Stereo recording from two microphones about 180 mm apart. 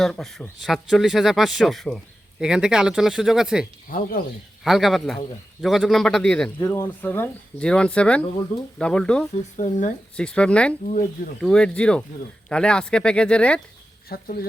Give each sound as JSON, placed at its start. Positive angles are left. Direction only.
{"t": 0.0, "sound": "speech", "side_deg": 0}
{"t": 3.8, "sound": "speech", "side_deg": 50}
{"t": 4.6, "sound": "speech", "side_deg": 0}
{"t": 9.3, "sound": "speech", "side_deg": 40}
{"t": 10.2, "sound": "speech", "side_deg": 5}
{"t": 10.8, "sound": "speech", "side_deg": 45}
{"t": 11.3, "sound": "speech", "side_deg": 5}
{"t": 14.1, "sound": "speech", "side_deg": 55}